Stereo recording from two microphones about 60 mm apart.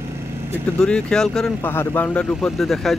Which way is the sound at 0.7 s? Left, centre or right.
Centre.